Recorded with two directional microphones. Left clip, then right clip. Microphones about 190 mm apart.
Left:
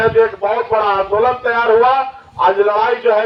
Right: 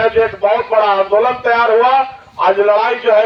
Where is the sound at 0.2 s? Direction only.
40° right (ahead or behind).